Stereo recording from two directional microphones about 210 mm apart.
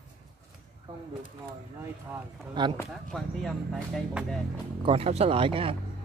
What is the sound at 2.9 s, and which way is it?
Speech, centre (ahead or behind).